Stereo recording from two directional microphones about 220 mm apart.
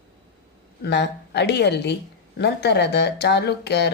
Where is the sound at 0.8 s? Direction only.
50° left (ahead or behind).